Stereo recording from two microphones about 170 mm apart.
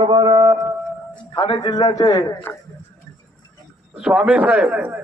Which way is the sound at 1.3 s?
30° left (ahead or behind).